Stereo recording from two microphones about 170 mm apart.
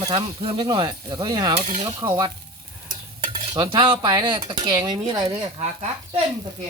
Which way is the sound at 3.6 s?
30° right (ahead or behind).